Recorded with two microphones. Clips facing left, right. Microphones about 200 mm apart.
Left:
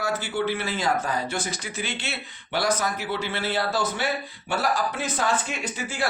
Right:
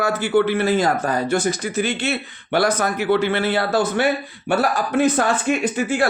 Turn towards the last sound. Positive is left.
turn(degrees=-55)  # may be behind; listen again after turning